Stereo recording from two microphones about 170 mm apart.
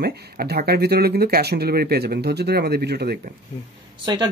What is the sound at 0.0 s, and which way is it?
Speech, 65° right (ahead or behind).